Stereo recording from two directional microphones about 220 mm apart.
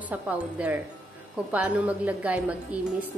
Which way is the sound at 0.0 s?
5° right (ahead or behind).